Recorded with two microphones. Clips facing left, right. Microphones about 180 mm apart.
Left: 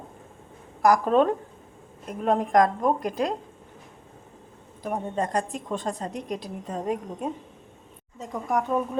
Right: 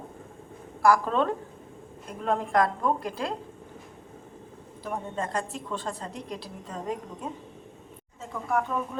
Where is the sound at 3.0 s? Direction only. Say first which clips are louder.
Left 5 dB; 15° left (ahead or behind).